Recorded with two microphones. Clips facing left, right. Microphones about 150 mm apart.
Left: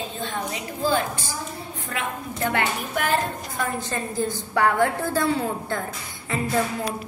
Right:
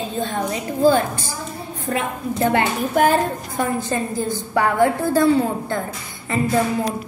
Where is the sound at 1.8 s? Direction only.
30° right (ahead or behind).